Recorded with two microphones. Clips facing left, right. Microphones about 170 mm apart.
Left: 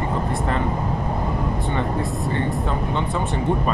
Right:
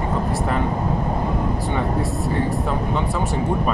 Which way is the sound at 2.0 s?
5° right (ahead or behind).